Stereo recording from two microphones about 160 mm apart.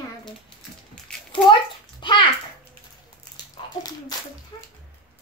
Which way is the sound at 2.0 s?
30° left (ahead or behind).